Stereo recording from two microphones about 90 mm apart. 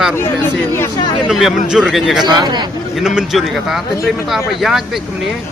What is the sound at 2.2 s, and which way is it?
Speech, 50° right (ahead or behind).